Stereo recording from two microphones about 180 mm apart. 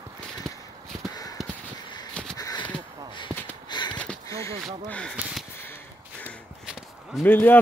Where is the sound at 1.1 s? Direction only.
20° left (ahead or behind).